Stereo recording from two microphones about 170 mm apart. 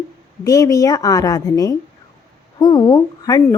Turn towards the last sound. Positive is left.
turn(degrees=25)  # may be behind; listen again after turning